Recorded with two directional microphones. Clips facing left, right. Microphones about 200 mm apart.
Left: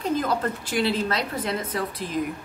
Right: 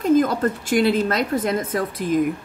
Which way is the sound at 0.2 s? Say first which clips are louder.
Right 6 dB; 45° right (ahead or behind).